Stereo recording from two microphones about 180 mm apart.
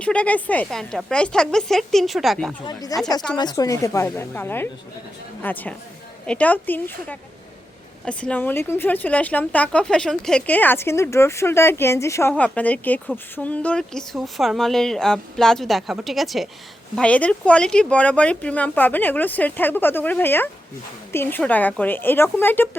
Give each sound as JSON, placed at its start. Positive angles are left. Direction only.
{"t": 0.0, "sound": "speech", "side_deg": 5}
{"t": 2.6, "sound": "speech", "side_deg": 20}